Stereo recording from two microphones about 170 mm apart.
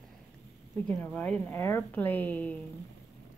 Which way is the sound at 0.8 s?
10° left (ahead or behind).